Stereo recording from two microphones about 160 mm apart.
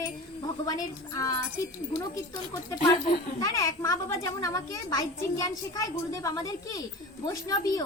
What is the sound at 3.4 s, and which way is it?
A child's voice, 20° left (ahead or behind).